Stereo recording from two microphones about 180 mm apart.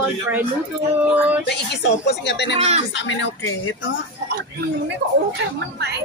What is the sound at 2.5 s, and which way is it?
Speech, 35° right (ahead or behind).